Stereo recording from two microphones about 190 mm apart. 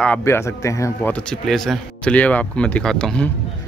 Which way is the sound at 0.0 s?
10° left (ahead or behind).